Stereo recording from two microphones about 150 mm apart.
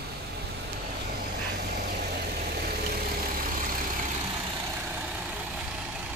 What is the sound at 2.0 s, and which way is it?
Vehicle, 80° right.